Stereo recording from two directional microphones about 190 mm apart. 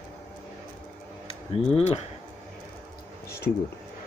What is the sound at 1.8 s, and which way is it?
Speech, 35° left (ahead or behind).